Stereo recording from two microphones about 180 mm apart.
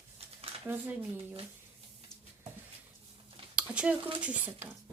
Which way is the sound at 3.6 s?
5° right (ahead or behind).